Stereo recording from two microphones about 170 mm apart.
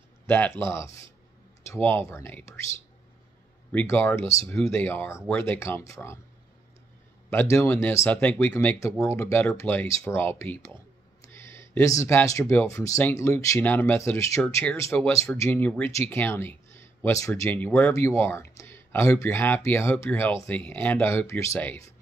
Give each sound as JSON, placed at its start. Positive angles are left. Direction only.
{"t": 0.3, "sound": "speech", "side_deg": 15}
{"t": 3.8, "sound": "speech", "side_deg": 15}
{"t": 7.2, "sound": "speech", "side_deg": 15}